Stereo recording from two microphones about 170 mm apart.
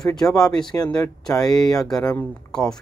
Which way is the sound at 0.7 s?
15° left (ahead or behind).